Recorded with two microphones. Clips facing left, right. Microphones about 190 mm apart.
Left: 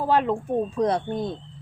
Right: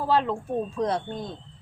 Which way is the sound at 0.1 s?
15° left (ahead or behind).